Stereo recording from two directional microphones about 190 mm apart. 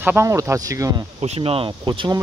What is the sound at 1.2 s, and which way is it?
Speech, 30° right (ahead or behind).